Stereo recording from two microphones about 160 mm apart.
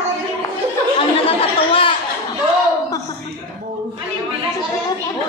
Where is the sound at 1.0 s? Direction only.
35° left (ahead or behind).